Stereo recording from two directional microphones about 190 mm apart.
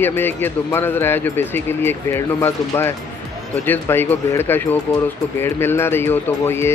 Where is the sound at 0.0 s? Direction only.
10° left (ahead or behind).